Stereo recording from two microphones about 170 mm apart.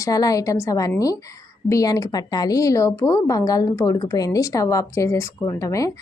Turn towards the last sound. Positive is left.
turn(degrees=20)  # may be behind; listen again after turning